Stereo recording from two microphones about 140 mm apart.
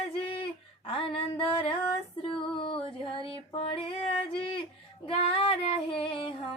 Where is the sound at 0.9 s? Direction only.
40° left (ahead or behind).